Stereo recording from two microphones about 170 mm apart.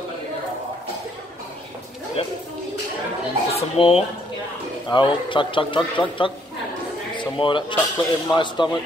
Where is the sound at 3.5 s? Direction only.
35° left (ahead or behind).